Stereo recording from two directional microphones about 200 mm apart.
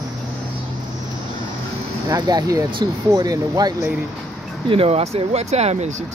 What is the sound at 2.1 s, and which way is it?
Speech, 20° right (ahead or behind).